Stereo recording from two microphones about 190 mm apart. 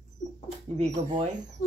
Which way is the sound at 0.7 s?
35° right (ahead or behind).